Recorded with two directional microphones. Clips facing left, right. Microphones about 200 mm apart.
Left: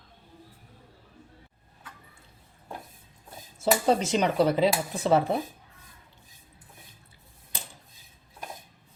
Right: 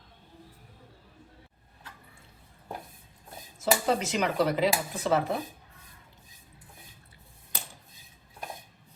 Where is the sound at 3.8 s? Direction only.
30° left (ahead or behind).